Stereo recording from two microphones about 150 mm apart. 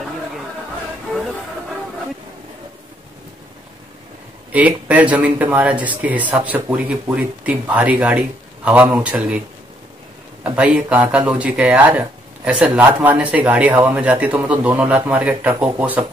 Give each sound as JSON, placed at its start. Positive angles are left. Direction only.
{"t": 4.5, "sound": "speech", "side_deg": -10}
{"t": 10.4, "sound": "speech", "side_deg": -10}